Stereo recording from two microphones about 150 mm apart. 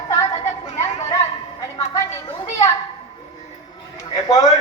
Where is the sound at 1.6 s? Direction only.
20° left (ahead or behind).